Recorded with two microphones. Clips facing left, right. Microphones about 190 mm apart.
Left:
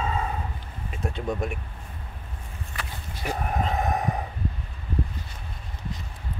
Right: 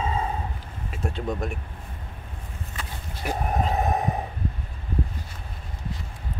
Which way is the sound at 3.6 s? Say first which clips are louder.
Right 1 dB; 30° right (ahead or behind).